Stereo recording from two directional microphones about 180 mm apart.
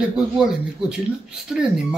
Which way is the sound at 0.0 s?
5° right (ahead or behind).